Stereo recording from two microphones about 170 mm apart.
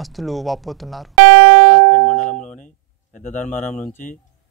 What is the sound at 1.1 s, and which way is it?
Music, 35° right (ahead or behind).